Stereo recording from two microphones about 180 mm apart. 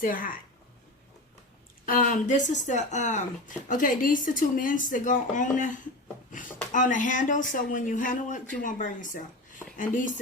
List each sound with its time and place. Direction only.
0.0 s speech: 50° left (ahead or behind)
1.8 s speech: 50° left (ahead or behind)